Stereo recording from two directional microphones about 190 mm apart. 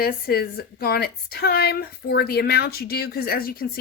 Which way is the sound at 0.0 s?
50° left (ahead or behind).